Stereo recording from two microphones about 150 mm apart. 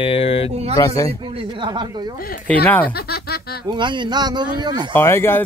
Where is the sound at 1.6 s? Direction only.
30° right (ahead or behind).